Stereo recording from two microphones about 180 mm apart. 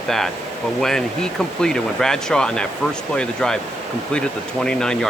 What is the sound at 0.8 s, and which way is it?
Speech, centre (ahead or behind).